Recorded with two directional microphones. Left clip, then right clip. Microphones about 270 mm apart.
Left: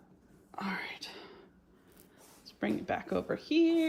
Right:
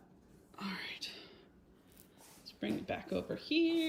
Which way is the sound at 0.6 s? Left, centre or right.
Centre.